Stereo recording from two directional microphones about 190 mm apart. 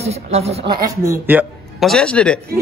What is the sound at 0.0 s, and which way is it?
Speech, 35° right (ahead or behind).